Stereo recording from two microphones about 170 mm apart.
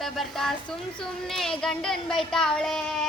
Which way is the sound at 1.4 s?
5° left (ahead or behind).